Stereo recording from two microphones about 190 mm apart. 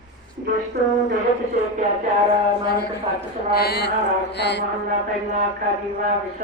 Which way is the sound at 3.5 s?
55° left (ahead or behind).